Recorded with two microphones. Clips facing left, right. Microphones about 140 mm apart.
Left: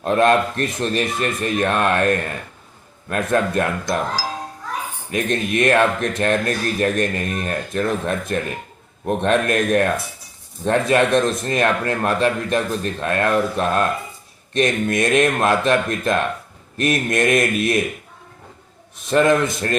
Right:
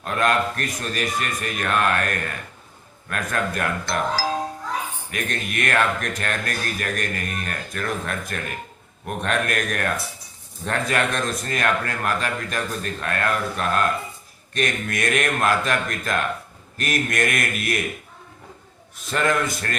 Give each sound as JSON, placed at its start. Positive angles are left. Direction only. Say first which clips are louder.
{"t": 0.0, "sound": "a man's voice", "louder": "left 6 dB", "side_deg": 25}
{"t": 5.1, "sound": "a man's voice", "louder": "left 9 dB", "side_deg": 25}
{"t": 19.0, "sound": "a man's voice", "louder": "left 7 dB", "side_deg": 20}